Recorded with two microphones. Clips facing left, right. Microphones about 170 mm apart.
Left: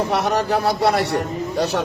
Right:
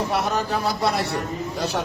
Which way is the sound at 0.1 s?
70° left (ahead or behind).